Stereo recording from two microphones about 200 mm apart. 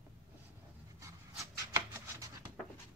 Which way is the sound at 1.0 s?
15° right (ahead or behind).